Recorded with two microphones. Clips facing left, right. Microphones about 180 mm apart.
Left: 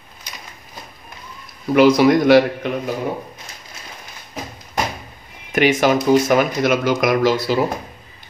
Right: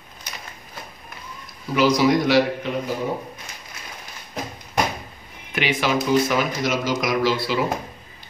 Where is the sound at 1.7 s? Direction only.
60° left (ahead or behind).